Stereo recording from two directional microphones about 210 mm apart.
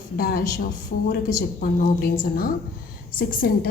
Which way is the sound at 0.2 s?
45° left (ahead or behind).